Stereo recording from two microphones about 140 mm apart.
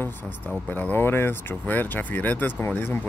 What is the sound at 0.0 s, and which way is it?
Speech, 15° left (ahead or behind).